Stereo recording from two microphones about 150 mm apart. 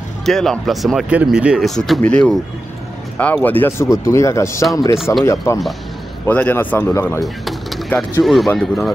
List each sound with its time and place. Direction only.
0.2 s speech: 5° left (ahead or behind); by 7.2 s 20° left (ahead or behind)
8.2 s speech: centre (ahead or behind)